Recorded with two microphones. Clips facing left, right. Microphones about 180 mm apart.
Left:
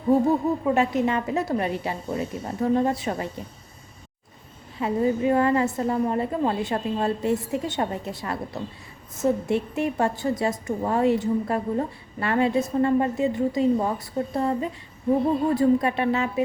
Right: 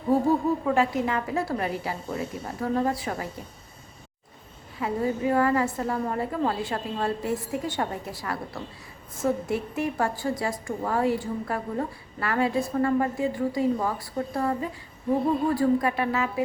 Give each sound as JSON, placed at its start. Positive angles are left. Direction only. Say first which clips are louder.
{"t": 0.3, "sound": "a woman's voice", "louder": "left 1 dB", "side_deg": 20}
{"t": 4.8, "sound": "a woman's voice", "louder": "left 4 dB", "side_deg": 20}